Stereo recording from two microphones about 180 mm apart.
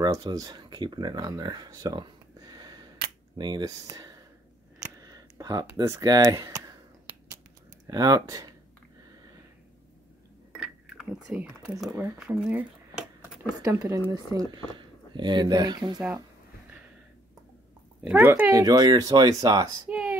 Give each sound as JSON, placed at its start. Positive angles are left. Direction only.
{"t": 0.0, "sound": "speech", "side_deg": -20}
{"t": 7.8, "sound": "speech", "side_deg": -20}
{"t": 10.5, "sound": "a sound", "side_deg": 0}
{"t": 13.6, "sound": "speech", "side_deg": -20}
{"t": 18.0, "sound": "speech", "side_deg": -10}
{"t": 19.9, "sound": "a woman's voice", "side_deg": -5}